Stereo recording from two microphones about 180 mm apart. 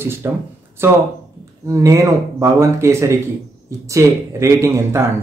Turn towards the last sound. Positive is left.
turn(degrees=-15)  # may be behind; listen again after turning